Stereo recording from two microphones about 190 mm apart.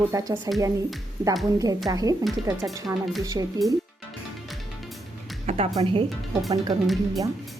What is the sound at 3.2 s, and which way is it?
Speech, 20° right (ahead or behind).